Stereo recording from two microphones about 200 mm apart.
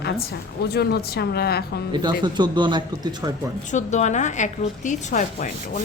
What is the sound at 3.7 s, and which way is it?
A woman's voice, 35° left (ahead or behind).